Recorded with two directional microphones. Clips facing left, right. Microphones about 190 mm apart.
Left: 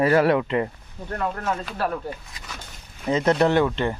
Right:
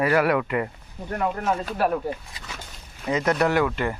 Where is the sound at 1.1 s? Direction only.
15° right (ahead or behind).